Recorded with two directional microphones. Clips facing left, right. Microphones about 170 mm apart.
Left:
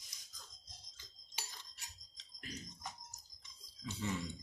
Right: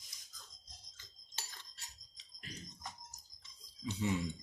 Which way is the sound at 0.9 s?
15° left (ahead or behind).